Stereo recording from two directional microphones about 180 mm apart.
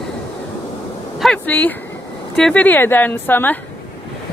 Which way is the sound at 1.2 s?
5° left (ahead or behind).